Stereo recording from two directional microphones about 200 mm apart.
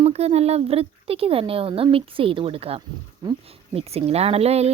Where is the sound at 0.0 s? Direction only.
30° right (ahead or behind).